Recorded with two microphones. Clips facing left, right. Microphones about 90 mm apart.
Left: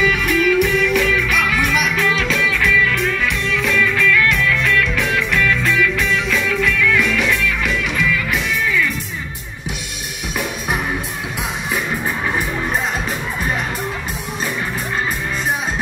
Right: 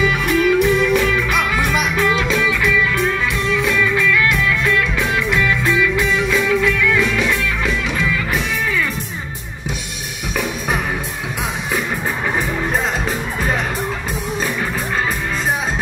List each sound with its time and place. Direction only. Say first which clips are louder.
0.0 s music: right 1 dB; 30° right (ahead or behind)